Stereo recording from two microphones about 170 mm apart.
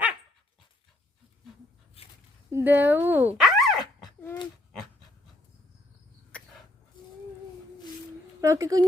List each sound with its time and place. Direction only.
2.0 s a sound: 35° left (ahead or behind)
2.5 s dog: 15° right (ahead or behind)
6.3 s sneeze: 5° left (ahead or behind)
8.4 s speech: 20° right (ahead or behind)